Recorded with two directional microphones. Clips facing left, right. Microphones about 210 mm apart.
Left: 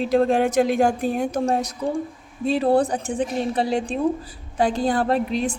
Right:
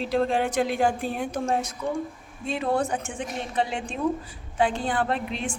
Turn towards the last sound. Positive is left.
turn(degrees=40)  # may be behind; listen again after turning